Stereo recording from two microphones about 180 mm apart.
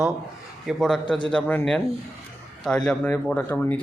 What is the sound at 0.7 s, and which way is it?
Speech, centre (ahead or behind).